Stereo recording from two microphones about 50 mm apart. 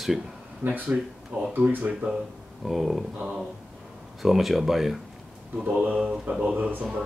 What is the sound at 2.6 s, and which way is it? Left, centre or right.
Speech, centre.